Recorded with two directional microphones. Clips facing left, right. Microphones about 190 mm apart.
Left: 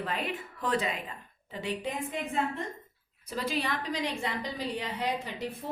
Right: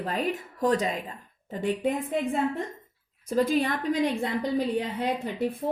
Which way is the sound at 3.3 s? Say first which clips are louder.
Right 8 dB; 50° right (ahead or behind).